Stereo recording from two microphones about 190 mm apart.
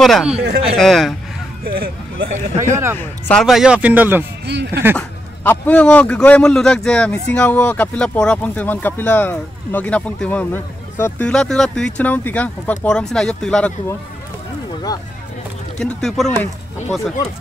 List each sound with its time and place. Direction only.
0.0 s a man's voice: centre (ahead or behind)
1.6 s a sound: 55° right (ahead or behind)
2.7 s a man's voice: 15° right (ahead or behind)
3.0 s a man's voice: 5° left (ahead or behind)
4.5 s speech: 65° right (ahead or behind)
4.9 s speech: 10° left (ahead or behind)
15.8 s a man's voice: centre (ahead or behind)